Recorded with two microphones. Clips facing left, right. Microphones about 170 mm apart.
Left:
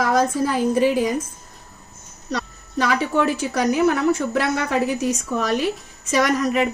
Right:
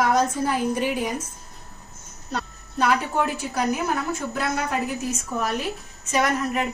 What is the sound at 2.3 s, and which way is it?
A woman's voice, 85° left.